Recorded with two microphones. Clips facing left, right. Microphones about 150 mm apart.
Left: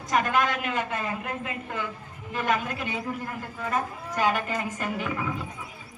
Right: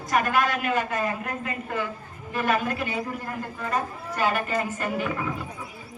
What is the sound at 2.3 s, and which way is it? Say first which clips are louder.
Speech: right 2 dB; 20° left (ahead or behind).